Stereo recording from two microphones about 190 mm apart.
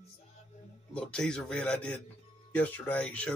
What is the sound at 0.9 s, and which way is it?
A man's voice, 5° left (ahead or behind).